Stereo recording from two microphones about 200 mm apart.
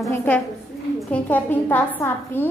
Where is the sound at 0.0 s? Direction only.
10° left (ahead or behind).